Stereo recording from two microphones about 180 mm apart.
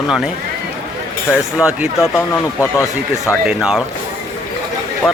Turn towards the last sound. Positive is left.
turn(degrees=10)  # may be behind; listen again after turning